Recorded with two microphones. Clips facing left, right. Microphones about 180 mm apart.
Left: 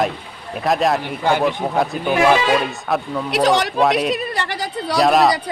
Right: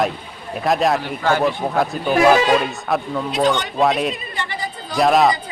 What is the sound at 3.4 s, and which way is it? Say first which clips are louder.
Speech: left 3 dB; 90° left.